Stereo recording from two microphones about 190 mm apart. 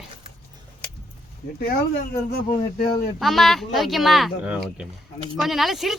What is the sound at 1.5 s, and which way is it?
Speech, 55° left (ahead or behind).